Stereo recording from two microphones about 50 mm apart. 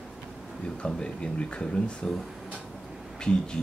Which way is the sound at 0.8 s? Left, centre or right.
Centre.